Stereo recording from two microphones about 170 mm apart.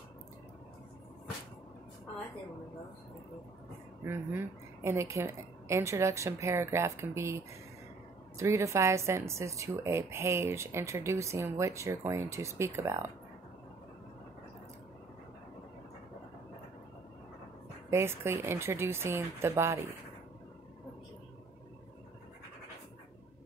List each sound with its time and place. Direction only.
4.0 s speech: 15° right (ahead or behind)
17.8 s speech: 15° right (ahead or behind)